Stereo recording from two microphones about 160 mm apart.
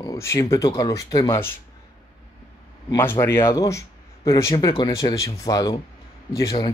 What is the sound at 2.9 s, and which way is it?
Speech, 15° left (ahead or behind).